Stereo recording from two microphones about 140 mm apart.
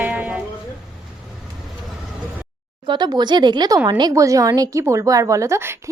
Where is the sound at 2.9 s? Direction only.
30° right (ahead or behind).